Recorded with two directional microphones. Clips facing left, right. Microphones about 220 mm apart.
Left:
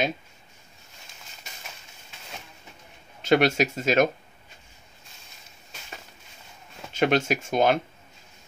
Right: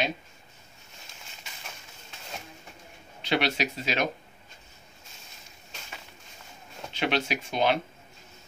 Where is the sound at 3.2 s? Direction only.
45° left (ahead or behind).